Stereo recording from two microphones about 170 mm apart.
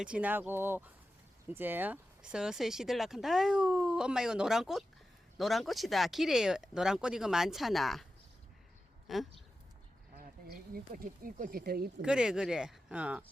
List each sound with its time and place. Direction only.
0.0 s speech: 5° right (ahead or behind)
9.1 s speech: centre (ahead or behind)
10.2 s speech: 60° right (ahead or behind)
12.0 s speech: 5° right (ahead or behind)